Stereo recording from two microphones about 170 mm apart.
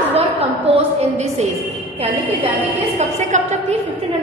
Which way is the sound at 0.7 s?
40° right (ahead or behind).